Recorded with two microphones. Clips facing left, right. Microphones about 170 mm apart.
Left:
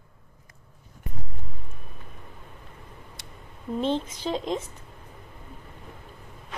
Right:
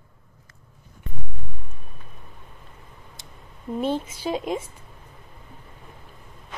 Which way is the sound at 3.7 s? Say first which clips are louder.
Right 1 dB; 10° right (ahead or behind).